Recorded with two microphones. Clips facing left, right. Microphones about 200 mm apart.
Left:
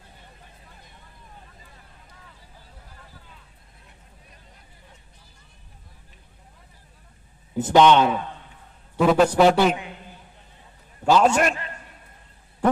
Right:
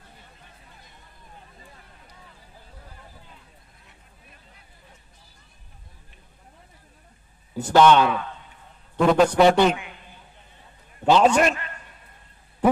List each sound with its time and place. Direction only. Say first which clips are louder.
7.5 s speech: even; 20° left (ahead or behind)
8.9 s a man's voice: even; centre (ahead or behind)
11.1 s a man's voice: right 1 dB; centre (ahead or behind)